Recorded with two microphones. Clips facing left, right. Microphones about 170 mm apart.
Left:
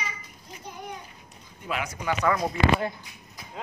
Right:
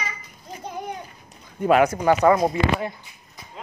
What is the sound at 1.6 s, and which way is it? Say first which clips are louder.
Speech: right 15 dB; 55° right (ahead or behind).